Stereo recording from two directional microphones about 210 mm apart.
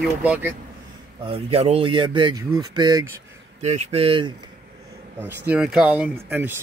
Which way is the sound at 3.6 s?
30° right (ahead or behind).